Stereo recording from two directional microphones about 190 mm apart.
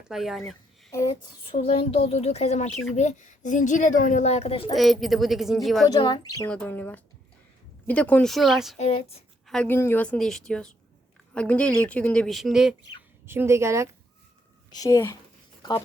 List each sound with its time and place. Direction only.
0.1 s a woman's voice: centre (ahead or behind)
1.5 s speech: 30° left (ahead or behind)
4.7 s a woman's voice: centre (ahead or behind)
5.9 s speech: 25° left (ahead or behind)
6.5 s a woman's voice: 5° left (ahead or behind)
8.8 s speech: 30° left (ahead or behind)
9.5 s a woman's voice: 10° left (ahead or behind)
13.2 s speech: 10° right (ahead or behind)
14.7 s speech: 20° left (ahead or behind)